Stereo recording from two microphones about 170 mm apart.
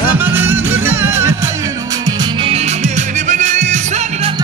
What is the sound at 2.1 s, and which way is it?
Music, 35° right (ahead or behind).